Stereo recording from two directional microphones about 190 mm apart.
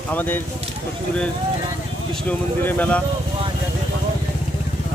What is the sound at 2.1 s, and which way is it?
Speech, 5° left (ahead or behind).